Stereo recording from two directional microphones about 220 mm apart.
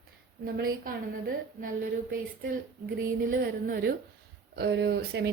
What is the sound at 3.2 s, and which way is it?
A woman's voice, 40° right (ahead or behind).